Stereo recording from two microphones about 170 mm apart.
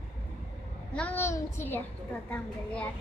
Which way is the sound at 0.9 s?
10° left (ahead or behind).